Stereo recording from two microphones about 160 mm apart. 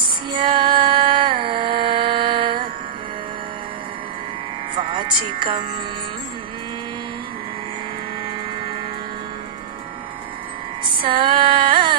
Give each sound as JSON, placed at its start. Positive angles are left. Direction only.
{"t": 0.0, "sound": "music", "side_deg": -30}
{"t": 4.7, "sound": "speech", "side_deg": -30}
{"t": 10.9, "sound": "female singing", "side_deg": -30}